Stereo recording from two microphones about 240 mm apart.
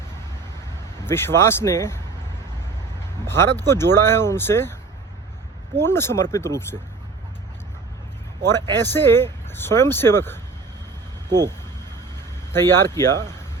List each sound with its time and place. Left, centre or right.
1.0 s speech: centre
3.2 s speech: centre
5.7 s speech: centre
8.8 s speech: centre
11.3 s speech: centre
12.5 s speech: centre